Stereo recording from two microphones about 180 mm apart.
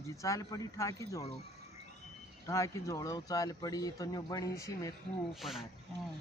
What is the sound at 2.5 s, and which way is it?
Speech, 15° left (ahead or behind).